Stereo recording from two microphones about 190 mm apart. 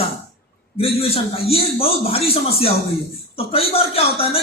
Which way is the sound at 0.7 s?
30° left (ahead or behind).